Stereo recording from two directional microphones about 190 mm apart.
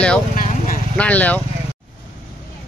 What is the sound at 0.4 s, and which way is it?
Vehicle, 45° left (ahead or behind).